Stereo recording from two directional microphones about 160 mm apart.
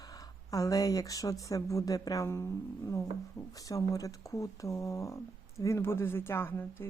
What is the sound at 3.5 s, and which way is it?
Speech, 20° left (ahead or behind).